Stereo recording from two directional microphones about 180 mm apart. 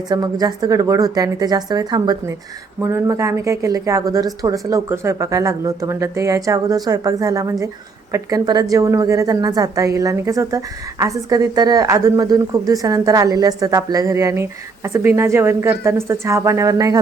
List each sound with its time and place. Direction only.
0.1 s a woman's voice: 20° right (ahead or behind)